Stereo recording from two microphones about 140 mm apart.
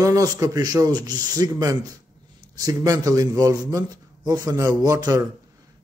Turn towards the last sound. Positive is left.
turn(degrees=-25)  # may be behind; listen again after turning